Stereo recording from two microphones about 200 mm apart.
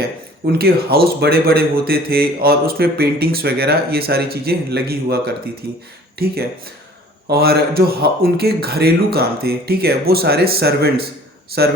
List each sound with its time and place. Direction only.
0.6 s a man's voice: 50° right (ahead or behind)